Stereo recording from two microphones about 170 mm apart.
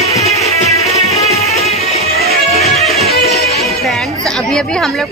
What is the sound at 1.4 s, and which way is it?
Music, 40° left (ahead or behind).